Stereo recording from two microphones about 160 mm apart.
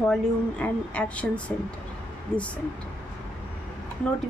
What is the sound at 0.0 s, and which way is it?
A woman's voice, 10° left (ahead or behind).